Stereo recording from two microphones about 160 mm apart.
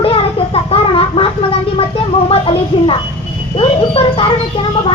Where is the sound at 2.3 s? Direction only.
35° left (ahead or behind).